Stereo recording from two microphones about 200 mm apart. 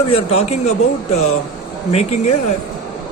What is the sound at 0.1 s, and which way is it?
Speech, 30° left (ahead or behind).